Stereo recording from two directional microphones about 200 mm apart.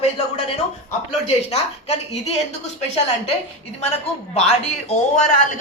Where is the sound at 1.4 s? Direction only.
35° left (ahead or behind).